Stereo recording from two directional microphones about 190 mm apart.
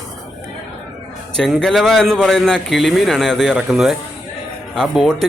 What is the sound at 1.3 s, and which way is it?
A man's voice, centre (ahead or behind).